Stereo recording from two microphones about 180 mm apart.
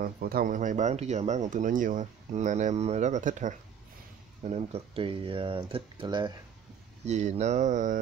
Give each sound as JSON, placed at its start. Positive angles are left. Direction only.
{"t": 0.0, "sound": "speech", "side_deg": -55}
{"t": 7.1, "sound": "mantra", "side_deg": -40}